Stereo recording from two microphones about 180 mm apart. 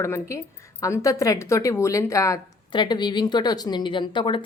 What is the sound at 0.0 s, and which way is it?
A woman's voice, 15° left (ahead or behind).